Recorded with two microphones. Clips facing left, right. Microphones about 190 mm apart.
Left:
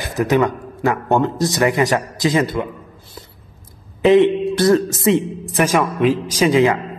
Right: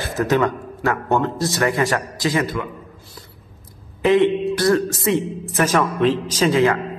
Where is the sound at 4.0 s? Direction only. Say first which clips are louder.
Left 3 dB; 20° left (ahead or behind).